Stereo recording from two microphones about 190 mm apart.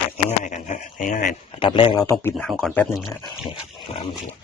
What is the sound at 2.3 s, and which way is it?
Speech, centre (ahead or behind).